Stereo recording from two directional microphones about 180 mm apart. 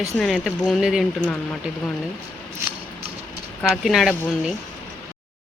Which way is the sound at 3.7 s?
Centre (ahead or behind).